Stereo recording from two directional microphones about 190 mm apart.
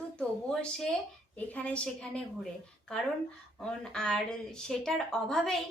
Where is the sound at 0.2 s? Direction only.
5° left (ahead or behind).